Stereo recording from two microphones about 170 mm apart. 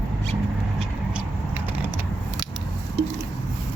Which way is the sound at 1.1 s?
10° right (ahead or behind).